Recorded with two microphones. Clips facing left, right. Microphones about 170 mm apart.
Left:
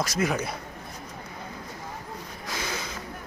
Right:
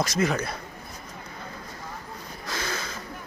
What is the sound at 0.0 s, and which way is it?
Speech, 5° left (ahead or behind).